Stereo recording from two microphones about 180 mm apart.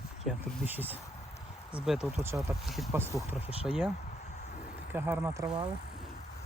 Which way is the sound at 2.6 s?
Centre (ahead or behind).